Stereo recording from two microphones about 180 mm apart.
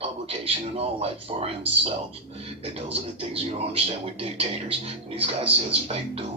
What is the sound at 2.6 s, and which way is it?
Speech, 30° right (ahead or behind).